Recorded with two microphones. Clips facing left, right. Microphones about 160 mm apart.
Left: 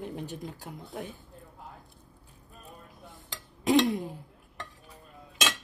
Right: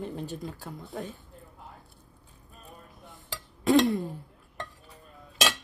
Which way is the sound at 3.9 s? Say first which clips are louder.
Right 2 dB; 20° left (ahead or behind).